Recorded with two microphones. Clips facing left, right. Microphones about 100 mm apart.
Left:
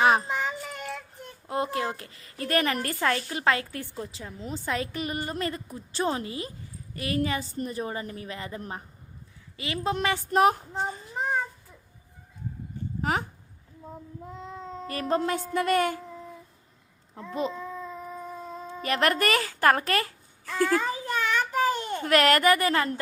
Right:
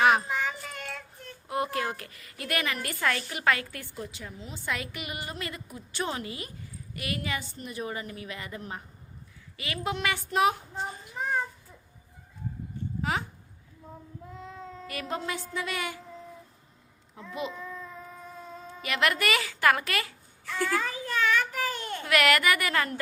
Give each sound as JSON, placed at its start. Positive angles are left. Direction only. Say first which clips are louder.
{"t": 0.0, "sound": "child singing", "louder": "left 1 dB", "side_deg": 30}
{"t": 0.8, "sound": "child singing", "louder": "left 3 dB", "side_deg": 10}
{"t": 1.5, "sound": "a woman's voice", "louder": "left 1 dB", "side_deg": 30}
{"t": 13.0, "sound": "speech", "louder": "left 3 dB", "side_deg": 40}
{"t": 14.4, "sound": "child singing", "louder": "left 4 dB", "side_deg": 20}
{"t": 14.8, "sound": "a woman's voice", "louder": "left 7 dB", "side_deg": 35}
{"t": 15.2, "sound": "a woman's voice", "louder": "left 7 dB", "side_deg": 50}
{"t": 17.6, "sound": "babbling", "louder": "left 4 dB", "side_deg": 20}
{"t": 18.8, "sound": "a child's voice", "louder": "left 3 dB", "side_deg": 40}
{"t": 20.8, "sound": "child singing", "louder": "even", "side_deg": 25}
{"t": 22.0, "sound": "a woman's voice", "louder": "left 3 dB", "side_deg": 35}